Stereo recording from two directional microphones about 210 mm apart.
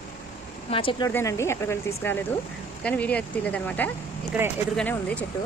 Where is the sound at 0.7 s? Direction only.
25° left (ahead or behind).